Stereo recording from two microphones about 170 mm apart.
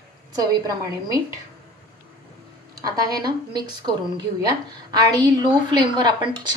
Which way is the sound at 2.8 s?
20° right (ahead or behind).